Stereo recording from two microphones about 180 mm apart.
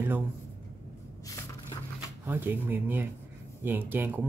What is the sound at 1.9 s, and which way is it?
Speech, 10° right (ahead or behind).